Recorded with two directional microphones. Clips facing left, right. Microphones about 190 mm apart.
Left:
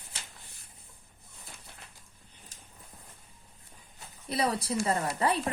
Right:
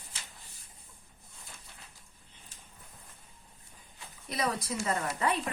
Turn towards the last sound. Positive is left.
turn(degrees=35)  # may be behind; listen again after turning